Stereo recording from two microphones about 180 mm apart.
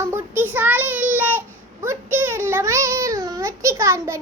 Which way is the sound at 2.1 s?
15° right (ahead or behind).